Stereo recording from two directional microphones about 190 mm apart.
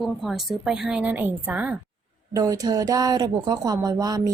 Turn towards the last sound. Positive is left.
turn(degrees=-20)  # may be behind; listen again after turning